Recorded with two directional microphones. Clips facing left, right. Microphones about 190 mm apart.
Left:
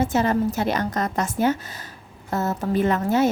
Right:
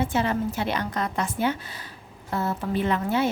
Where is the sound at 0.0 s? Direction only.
45° left (ahead or behind).